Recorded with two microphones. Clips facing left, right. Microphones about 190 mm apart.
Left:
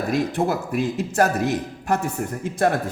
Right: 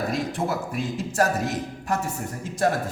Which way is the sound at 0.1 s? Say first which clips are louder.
Left 5 dB; 65° left (ahead or behind).